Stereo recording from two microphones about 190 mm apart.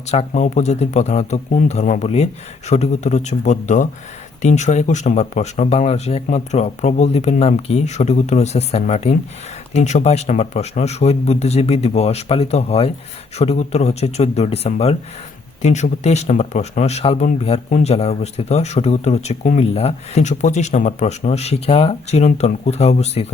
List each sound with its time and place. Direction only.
0.1 s speech: 35° left (ahead or behind)